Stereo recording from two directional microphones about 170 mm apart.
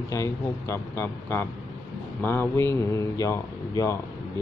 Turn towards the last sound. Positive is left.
turn(degrees=20)  # may be behind; listen again after turning